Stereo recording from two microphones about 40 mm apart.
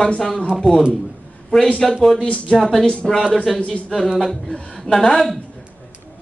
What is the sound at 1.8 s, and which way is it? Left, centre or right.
A man's voice, centre.